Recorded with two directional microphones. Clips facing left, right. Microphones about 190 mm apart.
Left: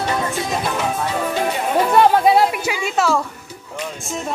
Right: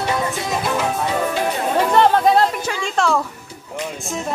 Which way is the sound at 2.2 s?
10° left (ahead or behind).